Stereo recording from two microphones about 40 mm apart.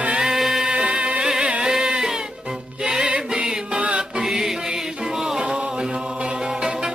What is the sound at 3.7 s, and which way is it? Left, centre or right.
Music, right.